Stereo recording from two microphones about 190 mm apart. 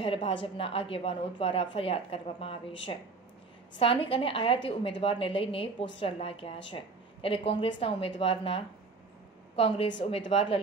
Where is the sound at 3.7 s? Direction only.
30° left (ahead or behind).